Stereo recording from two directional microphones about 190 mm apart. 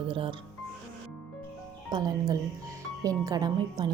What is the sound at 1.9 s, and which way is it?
A woman's voice, 20° right (ahead or behind).